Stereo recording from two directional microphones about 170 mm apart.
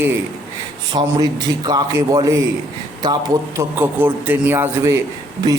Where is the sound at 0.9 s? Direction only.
25° right (ahead or behind).